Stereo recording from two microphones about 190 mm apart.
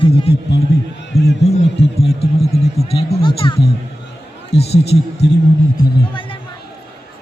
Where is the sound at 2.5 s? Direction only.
35° left (ahead or behind).